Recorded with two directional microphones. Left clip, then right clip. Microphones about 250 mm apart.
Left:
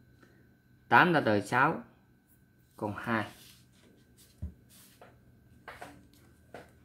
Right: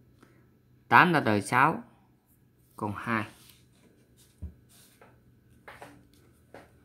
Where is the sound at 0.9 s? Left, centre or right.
Right.